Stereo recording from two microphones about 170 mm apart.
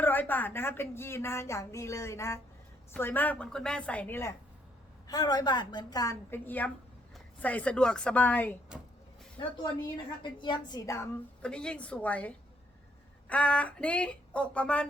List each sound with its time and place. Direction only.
0.0 s a woman's voice: 10° left (ahead or behind)
9.4 s a woman's voice: 25° left (ahead or behind)
11.4 s a woman's voice: 5° left (ahead or behind)